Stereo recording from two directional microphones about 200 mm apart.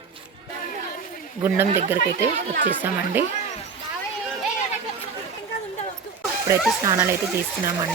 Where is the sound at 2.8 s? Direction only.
10° right (ahead or behind).